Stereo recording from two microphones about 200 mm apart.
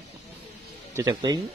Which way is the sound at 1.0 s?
20° right (ahead or behind).